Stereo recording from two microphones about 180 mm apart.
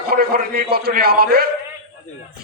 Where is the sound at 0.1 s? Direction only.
55° right (ahead or behind).